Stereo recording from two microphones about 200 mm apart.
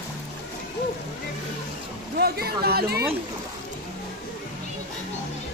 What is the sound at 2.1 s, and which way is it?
Speech, 50° right (ahead or behind).